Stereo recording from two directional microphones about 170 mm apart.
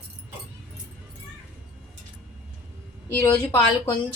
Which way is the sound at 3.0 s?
10° left (ahead or behind).